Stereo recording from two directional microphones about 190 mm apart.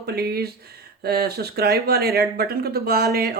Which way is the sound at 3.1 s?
55° right (ahead or behind).